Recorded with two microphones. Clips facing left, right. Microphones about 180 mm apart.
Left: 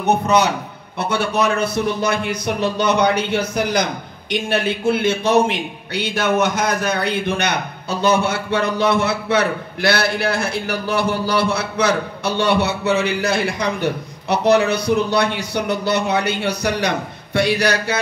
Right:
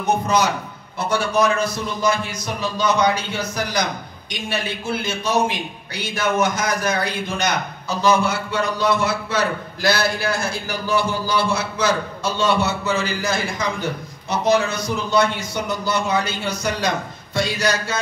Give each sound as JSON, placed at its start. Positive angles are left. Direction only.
{"t": 0.0, "sound": "a man's voice", "side_deg": 65}